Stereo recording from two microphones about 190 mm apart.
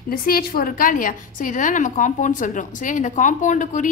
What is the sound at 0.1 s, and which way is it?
A woman's voice, 50° left (ahead or behind).